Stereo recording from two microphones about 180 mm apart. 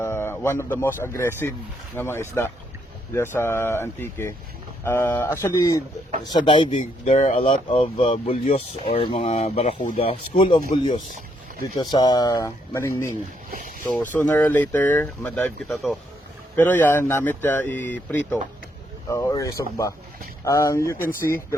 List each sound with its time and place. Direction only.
0.0 s speech: 15° left (ahead or behind); by 10.6 s 30° left (ahead or behind)
11.8 s speech: 25° left (ahead or behind)
13.5 s speech: 50° right (ahead or behind)
13.8 s speech: 10° left (ahead or behind)
15.7 s speech: centre (ahead or behind); by 21.1 s 15° left (ahead or behind)